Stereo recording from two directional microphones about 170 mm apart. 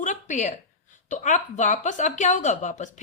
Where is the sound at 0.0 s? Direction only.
50° left (ahead or behind).